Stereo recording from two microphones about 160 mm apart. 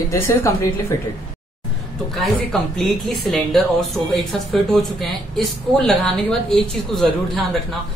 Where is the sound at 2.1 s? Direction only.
Centre (ahead or behind).